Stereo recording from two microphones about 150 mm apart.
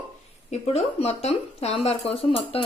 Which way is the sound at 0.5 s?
45° left (ahead or behind).